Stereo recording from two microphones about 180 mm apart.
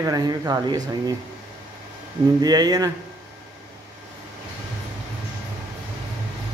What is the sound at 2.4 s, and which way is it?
Speech, 20° right (ahead or behind).